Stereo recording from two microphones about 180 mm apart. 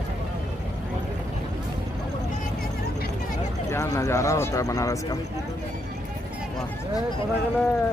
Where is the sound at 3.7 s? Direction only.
15° left (ahead or behind).